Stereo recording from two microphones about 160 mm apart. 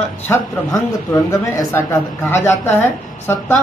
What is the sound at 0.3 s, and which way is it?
A woman's voice, 20° left (ahead or behind).